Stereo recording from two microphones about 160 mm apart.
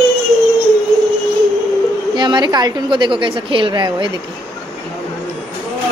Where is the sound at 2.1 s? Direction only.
25° right (ahead or behind).